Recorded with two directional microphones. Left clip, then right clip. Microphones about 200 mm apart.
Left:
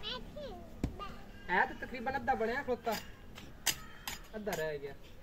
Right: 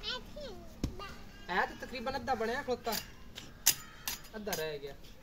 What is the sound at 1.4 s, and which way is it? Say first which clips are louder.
Speech: left 2 dB; 10° left (ahead or behind).